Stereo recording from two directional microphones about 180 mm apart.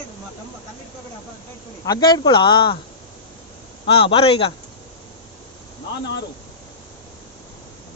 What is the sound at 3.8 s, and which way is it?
Speech, 30° left (ahead or behind).